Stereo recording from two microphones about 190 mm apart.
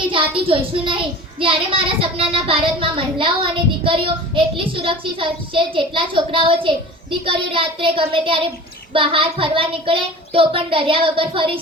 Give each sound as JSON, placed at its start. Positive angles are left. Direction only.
{"t": 0.1, "sound": "a child's voice", "side_deg": -30}